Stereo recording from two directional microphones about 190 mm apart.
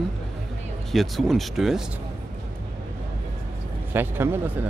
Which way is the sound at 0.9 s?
Centre (ahead or behind).